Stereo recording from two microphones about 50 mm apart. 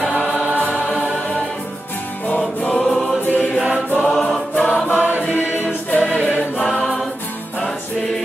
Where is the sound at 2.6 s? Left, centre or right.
Left.